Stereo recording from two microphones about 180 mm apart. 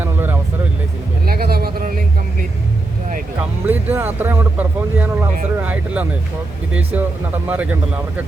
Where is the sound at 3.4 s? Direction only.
10° right (ahead or behind).